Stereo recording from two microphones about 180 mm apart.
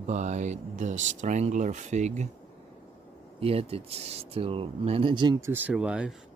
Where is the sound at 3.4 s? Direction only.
35° right (ahead or behind); by 6.1 s 5° right (ahead or behind).